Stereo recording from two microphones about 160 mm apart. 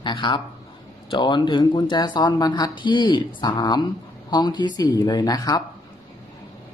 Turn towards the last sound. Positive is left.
turn(degrees=25)  # may be behind; listen again after turning